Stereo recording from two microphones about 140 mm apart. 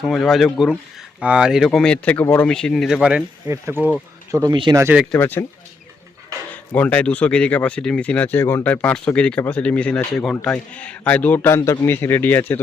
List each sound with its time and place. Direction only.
0.0 s speech: 5° left (ahead or behind)
3.4 s speech: 20° right (ahead or behind)
5.1 s speech: 15° left (ahead or behind)
6.7 s speech: 10° left (ahead or behind)